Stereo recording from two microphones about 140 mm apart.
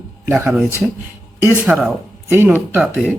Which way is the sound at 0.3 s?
15° right (ahead or behind).